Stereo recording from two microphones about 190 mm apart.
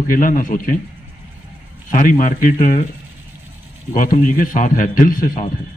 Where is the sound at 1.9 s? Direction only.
45° left (ahead or behind).